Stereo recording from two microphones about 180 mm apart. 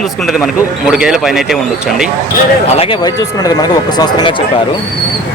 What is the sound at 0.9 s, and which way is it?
Speech, 5° right (ahead or behind).